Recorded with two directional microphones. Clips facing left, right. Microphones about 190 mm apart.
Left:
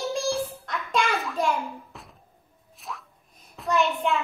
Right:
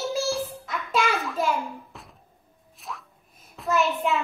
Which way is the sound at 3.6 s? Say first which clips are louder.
Even; 5° right (ahead or behind).